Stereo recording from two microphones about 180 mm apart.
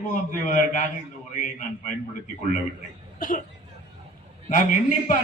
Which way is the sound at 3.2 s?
50° left (ahead or behind).